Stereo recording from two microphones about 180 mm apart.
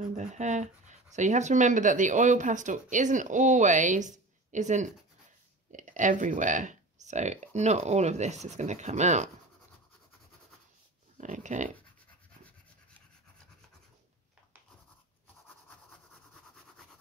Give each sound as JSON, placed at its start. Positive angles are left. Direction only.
{"t": 0.1, "sound": "speech", "side_deg": -40}
{"t": 11.1, "sound": "speech", "side_deg": -45}